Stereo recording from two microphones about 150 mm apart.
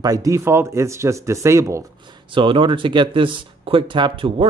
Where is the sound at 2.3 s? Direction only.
35° right (ahead or behind).